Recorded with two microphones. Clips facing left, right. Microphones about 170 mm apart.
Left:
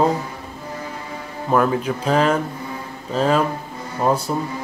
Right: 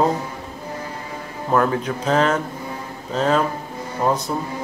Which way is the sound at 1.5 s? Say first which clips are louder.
Left 1 dB; 10° left (ahead or behind).